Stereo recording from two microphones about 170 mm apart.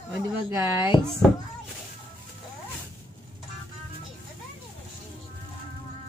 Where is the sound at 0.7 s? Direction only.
25° left (ahead or behind).